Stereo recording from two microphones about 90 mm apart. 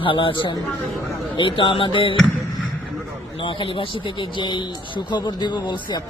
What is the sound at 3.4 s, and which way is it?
Speech, 70° left (ahead or behind).